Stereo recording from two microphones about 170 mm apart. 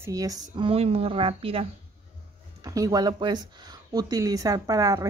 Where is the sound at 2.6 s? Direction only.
20° right (ahead or behind).